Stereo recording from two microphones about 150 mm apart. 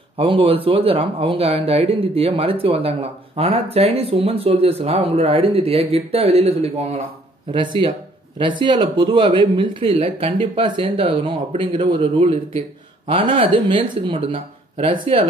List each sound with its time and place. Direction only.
0.2 s speech: 35° right (ahead or behind)